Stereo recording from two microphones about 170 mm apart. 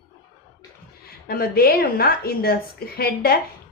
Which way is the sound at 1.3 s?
60° left (ahead or behind).